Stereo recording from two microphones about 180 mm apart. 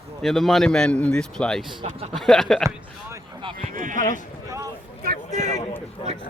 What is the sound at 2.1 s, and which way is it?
Speech, centre (ahead or behind).